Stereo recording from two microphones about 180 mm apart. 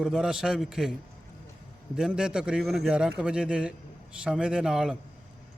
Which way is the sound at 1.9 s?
5° right (ahead or behind).